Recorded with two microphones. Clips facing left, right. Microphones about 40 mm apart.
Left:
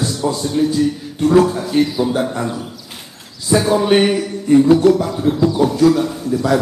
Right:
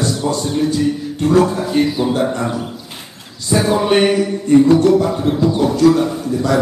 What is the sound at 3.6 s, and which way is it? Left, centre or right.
A man's voice, centre.